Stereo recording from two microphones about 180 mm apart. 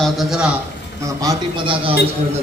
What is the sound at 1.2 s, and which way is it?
Speech, 25° right (ahead or behind).